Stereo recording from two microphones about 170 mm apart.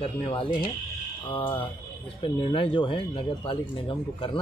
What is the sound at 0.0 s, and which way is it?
Speech, 30° left (ahead or behind).